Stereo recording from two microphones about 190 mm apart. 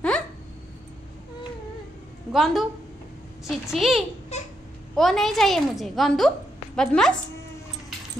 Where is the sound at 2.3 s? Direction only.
Centre (ahead or behind).